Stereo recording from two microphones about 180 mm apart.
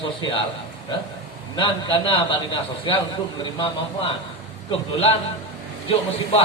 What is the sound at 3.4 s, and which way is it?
Speech, 25° left (ahead or behind).